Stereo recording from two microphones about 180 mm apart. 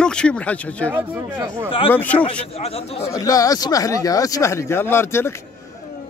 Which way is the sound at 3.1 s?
20° left (ahead or behind).